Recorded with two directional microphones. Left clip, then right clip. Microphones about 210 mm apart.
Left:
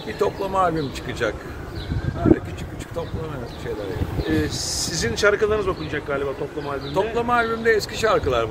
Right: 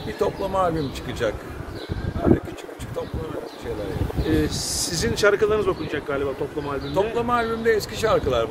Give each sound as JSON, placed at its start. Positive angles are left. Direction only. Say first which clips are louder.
{"t": 0.2, "sound": "speech", "louder": "left 2 dB", "side_deg": -5}
{"t": 4.3, "sound": "speech", "louder": "even", "side_deg": -60}
{"t": 6.9, "sound": "speech", "louder": "left 1 dB", "side_deg": -15}